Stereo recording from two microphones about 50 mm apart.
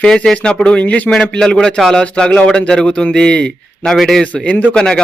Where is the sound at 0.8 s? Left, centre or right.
Left.